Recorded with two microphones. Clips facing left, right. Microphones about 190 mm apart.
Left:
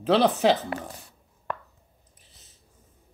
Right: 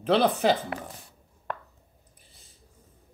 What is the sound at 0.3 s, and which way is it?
Speech, 5° left (ahead or behind).